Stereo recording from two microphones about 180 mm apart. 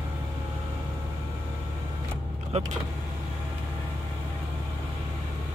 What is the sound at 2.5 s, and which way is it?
Speech, 40° right (ahead or behind).